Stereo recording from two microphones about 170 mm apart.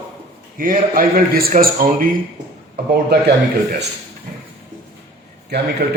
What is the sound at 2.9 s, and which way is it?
Speech, 75° right (ahead or behind).